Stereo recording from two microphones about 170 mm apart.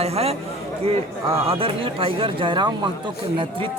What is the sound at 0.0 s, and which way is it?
A man's voice, 35° right (ahead or behind).